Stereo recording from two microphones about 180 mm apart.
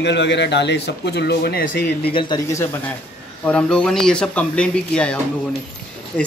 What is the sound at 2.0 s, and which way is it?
Speech, 30° left (ahead or behind).